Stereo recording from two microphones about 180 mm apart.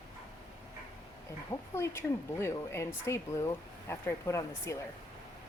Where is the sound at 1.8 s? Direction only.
15° left (ahead or behind).